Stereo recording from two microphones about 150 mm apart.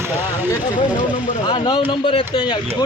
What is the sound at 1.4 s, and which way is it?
Speech, 30° left (ahead or behind).